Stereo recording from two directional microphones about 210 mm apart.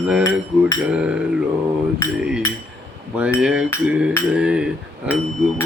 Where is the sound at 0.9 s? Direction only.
5° right (ahead or behind).